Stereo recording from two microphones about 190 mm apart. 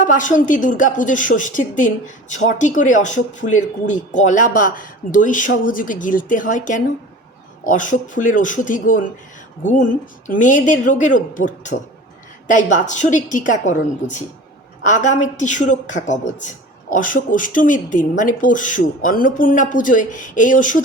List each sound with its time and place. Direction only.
0.0 s a woman's voice: 45° left (ahead or behind)
14.8 s a woman's voice: 40° left (ahead or behind)